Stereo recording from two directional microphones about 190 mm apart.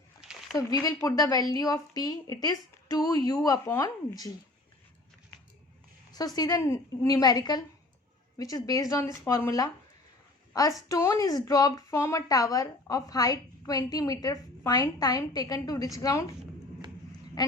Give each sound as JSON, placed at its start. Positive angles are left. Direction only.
{"t": 0.5, "sound": "a woman's voice", "side_deg": 20}
{"t": 6.1, "sound": "a woman's voice", "side_deg": 20}
{"t": 17.4, "sound": "duck", "side_deg": 20}